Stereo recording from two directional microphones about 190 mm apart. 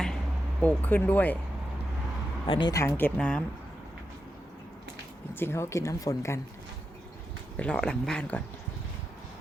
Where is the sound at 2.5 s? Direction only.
25° left (ahead or behind).